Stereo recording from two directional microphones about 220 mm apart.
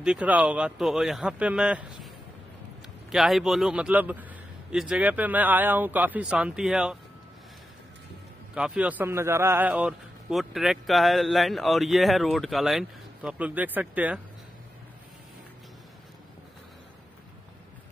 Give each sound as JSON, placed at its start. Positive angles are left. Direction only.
{"t": 0.0, "sound": "a man's voice", "side_deg": -5}
{"t": 3.1, "sound": "a man's voice", "side_deg": 0}
{"t": 8.5, "sound": "a man's voice", "side_deg": -5}